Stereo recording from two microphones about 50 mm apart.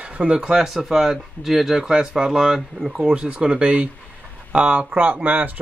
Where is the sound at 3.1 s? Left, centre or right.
Right.